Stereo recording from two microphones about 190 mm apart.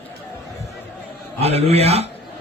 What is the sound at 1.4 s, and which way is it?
Speech, 35° right (ahead or behind).